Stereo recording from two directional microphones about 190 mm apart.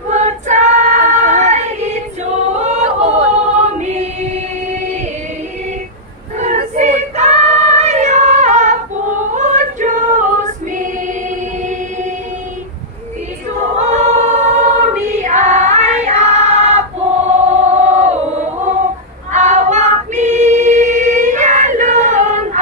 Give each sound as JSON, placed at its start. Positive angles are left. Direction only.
{"t": 0.1, "sound": "choir", "side_deg": -40}
{"t": 6.4, "sound": "singing", "side_deg": -40}
{"t": 9.3, "sound": "female singing", "side_deg": -40}
{"t": 13.7, "sound": "choir", "side_deg": -35}
{"t": 17.7, "sound": "chant", "side_deg": -35}
{"t": 19.3, "sound": "choir", "side_deg": -40}